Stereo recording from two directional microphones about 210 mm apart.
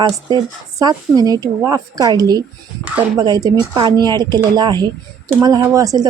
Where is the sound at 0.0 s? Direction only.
20° right (ahead or behind).